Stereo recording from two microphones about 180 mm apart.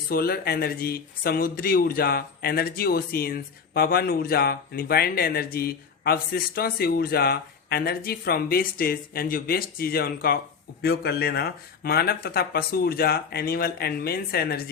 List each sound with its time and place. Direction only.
0.1 s speech: 60° left (ahead or behind)